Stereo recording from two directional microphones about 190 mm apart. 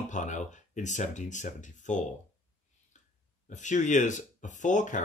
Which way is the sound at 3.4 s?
40° left (ahead or behind).